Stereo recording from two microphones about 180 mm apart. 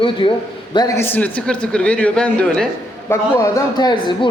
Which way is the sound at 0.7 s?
20° left (ahead or behind).